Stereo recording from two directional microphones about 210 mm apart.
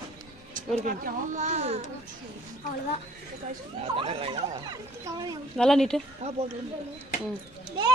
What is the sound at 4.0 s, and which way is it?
Speech, 25° right (ahead or behind).